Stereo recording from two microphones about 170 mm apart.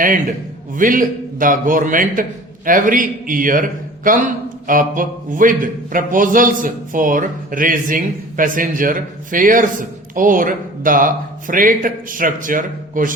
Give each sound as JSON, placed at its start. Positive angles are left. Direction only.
{"t": 0.8, "sound": "a man's voice", "side_deg": -55}